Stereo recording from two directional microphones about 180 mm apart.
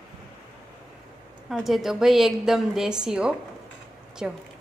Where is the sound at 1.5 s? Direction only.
Centre (ahead or behind).